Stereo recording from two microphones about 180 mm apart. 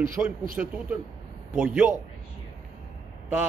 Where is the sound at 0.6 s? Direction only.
10° right (ahead or behind).